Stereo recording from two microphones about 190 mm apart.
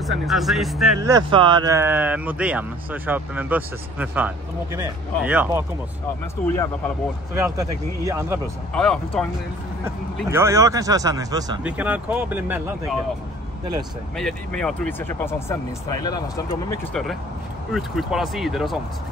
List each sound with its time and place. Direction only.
0.0 s speech: centre (ahead or behind)
1.0 s speech: 20° right (ahead or behind)
6.4 s speech: 10° left (ahead or behind)
7.3 s speech: 15° right (ahead or behind)
8.7 s speech: 5° left (ahead or behind)
10.3 s speech: 15° right (ahead or behind)
11.6 s speech: 5° right (ahead or behind)
14.1 s speech: 5° left (ahead or behind); by 16.5 s 20° left (ahead or behind)
16.9 s speech: centre (ahead or behind)